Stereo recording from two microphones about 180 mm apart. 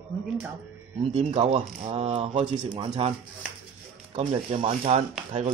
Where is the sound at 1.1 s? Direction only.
35° right (ahead or behind).